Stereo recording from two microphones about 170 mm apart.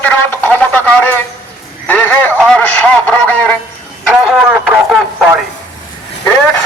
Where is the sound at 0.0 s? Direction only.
10° left (ahead or behind).